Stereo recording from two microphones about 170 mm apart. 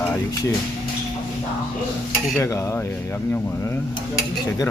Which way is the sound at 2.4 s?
15° left (ahead or behind).